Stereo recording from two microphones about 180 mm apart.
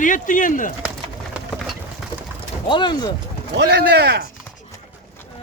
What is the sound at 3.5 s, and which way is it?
Speech, 65° right (ahead or behind).